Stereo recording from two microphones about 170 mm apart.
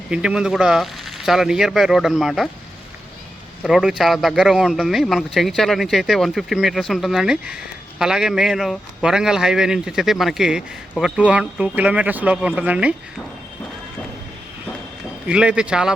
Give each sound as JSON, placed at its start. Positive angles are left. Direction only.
{"t": 0.1, "sound": "speech", "side_deg": -5}
{"t": 3.6, "sound": "speech", "side_deg": 0}
{"t": 15.3, "sound": "speech", "side_deg": -5}